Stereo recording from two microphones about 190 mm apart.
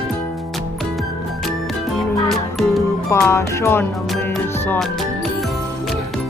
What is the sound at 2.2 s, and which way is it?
Music, centre (ahead or behind).